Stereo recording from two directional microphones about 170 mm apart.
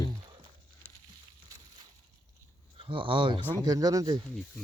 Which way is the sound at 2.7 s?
30° right (ahead or behind).